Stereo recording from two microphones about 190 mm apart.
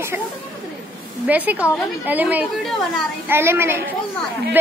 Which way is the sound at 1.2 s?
10° right (ahead or behind).